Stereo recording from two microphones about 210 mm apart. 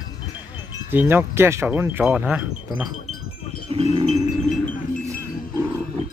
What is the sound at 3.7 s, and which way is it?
Livestock, 25° right (ahead or behind).